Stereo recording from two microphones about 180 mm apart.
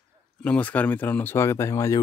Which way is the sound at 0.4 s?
5° left (ahead or behind).